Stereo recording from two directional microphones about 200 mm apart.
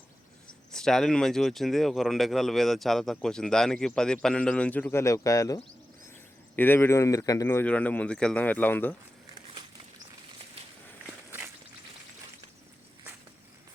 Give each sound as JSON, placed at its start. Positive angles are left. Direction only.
{"t": 0.7, "sound": "speech", "side_deg": 5}
{"t": 6.6, "sound": "speech", "side_deg": 10}
{"t": 11.3, "sound": "a sound", "side_deg": -10}